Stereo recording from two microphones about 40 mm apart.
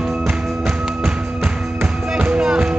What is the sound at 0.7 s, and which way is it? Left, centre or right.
Music, right.